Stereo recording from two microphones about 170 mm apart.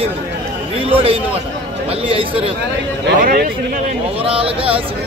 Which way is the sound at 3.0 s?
60° right (ahead or behind).